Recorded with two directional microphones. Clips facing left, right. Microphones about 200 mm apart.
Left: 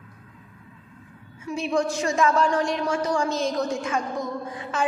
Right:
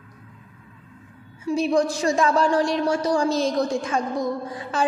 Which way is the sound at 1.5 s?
35° right (ahead or behind).